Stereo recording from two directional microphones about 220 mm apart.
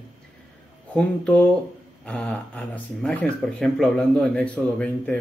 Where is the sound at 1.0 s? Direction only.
5° left (ahead or behind).